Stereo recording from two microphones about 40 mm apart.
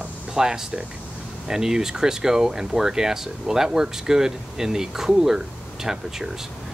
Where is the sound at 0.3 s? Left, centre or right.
Centre.